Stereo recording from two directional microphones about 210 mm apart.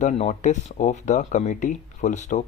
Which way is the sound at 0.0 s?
35° left (ahead or behind).